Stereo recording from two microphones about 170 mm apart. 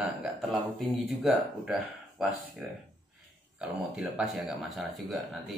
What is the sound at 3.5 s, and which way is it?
Speech, 5° right (ahead or behind).